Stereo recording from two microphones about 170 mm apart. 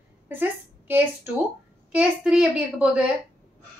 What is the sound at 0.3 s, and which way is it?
A woman's voice, 10° right (ahead or behind).